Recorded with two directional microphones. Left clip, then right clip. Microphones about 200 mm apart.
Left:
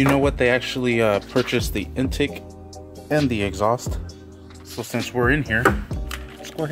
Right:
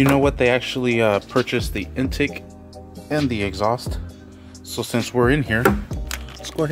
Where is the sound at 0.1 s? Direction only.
Centre (ahead or behind).